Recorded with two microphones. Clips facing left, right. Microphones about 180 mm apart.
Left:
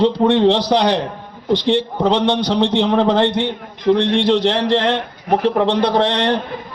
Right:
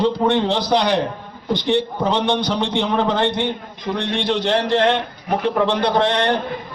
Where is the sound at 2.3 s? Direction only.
30° left (ahead or behind).